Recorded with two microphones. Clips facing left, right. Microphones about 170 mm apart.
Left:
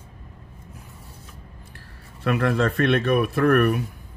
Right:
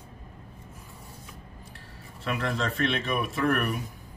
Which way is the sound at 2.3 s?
60° left (ahead or behind).